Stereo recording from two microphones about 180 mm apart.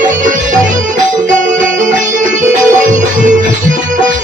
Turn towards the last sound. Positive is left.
turn(degrees=-45)  # may be behind; listen again after turning